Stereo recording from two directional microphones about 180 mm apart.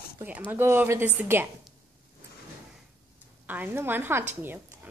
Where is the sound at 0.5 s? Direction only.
10° right (ahead or behind).